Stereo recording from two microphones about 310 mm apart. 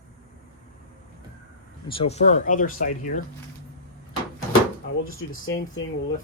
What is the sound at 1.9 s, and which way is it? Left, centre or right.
Speech, centre.